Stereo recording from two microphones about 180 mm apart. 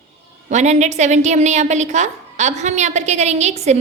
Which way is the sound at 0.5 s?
40° right (ahead or behind).